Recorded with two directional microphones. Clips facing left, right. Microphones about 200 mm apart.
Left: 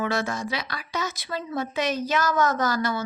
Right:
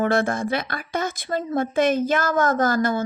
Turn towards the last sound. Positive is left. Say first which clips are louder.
# right 5 dB
turn(degrees=-50)  # may be behind; listen again after turning